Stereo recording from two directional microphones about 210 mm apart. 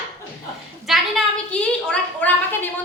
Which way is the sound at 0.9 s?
Centre (ahead or behind).